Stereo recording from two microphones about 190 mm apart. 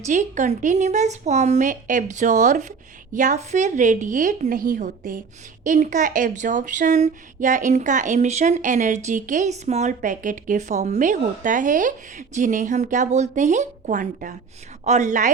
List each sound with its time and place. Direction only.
0.1 s a woman's voice: 40° right (ahead or behind)